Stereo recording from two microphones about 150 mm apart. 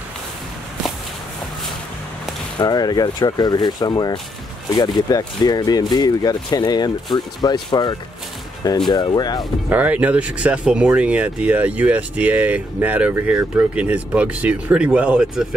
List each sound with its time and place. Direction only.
2.6 s speech: 25° left (ahead or behind)
9.7 s speech: 10° right (ahead or behind)